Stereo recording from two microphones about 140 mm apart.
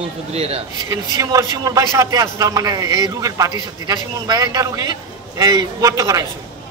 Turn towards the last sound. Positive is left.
turn(degrees=-25)  # may be behind; listen again after turning